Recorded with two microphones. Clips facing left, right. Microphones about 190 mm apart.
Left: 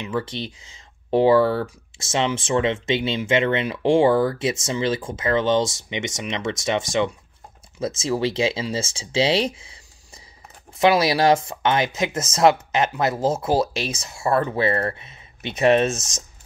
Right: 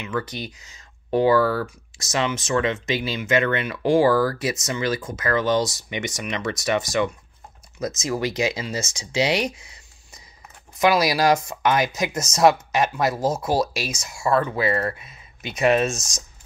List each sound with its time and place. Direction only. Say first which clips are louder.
0.0 s speech: left 1 dB; 30° left (ahead or behind)